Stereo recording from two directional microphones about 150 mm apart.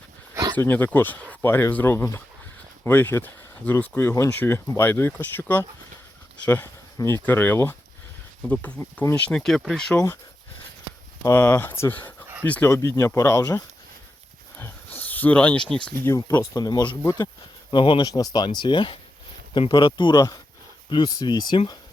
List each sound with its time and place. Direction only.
0.5 s speech: 15° left (ahead or behind)
9.3 s speech: centre (ahead or behind)
11.2 s speech: 15° left (ahead or behind)
14.9 s speech: 10° left (ahead or behind)
16.0 s speech: 20° left (ahead or behind)